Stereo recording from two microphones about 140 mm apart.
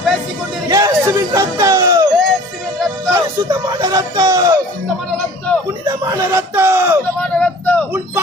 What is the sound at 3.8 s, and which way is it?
Speech, 25° right (ahead or behind).